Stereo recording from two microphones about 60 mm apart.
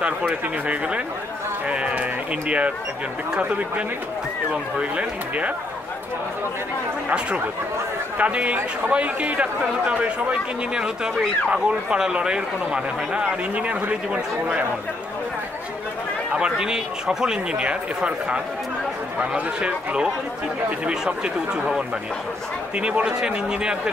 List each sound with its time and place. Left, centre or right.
0.0 s speech: right
7.1 s a man's voice: right
16.3 s a man's voice: centre